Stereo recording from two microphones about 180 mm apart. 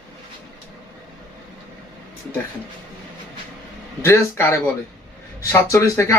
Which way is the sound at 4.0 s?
15° left (ahead or behind).